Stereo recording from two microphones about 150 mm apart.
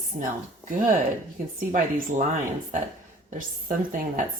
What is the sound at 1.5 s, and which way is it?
Speech, 65° right (ahead or behind).